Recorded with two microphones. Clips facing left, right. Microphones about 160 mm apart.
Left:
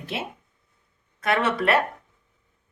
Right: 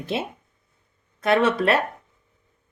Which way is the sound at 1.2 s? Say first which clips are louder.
Right 4 dB; 25° right (ahead or behind).